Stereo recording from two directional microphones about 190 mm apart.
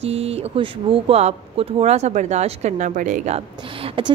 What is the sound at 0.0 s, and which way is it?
Speech, 35° right (ahead or behind).